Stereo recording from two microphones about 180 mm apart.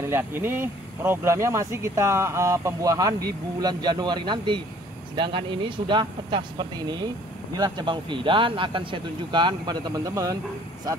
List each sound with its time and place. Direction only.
0.0 s a man's voice: 10° right (ahead or behind)